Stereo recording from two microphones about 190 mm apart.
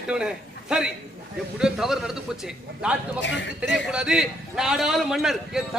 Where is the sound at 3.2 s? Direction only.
70° left (ahead or behind).